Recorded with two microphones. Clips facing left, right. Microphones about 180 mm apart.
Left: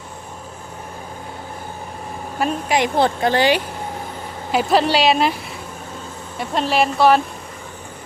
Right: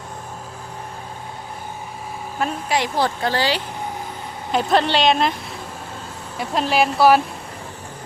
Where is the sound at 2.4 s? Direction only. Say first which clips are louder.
Left 3 dB; 15° left (ahead or behind).